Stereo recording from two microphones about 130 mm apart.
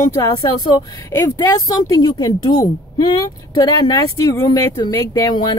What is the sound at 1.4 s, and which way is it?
Speech, 30° left (ahead or behind).